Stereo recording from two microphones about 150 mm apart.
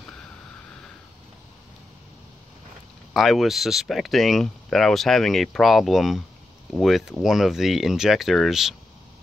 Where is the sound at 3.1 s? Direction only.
Centre (ahead or behind).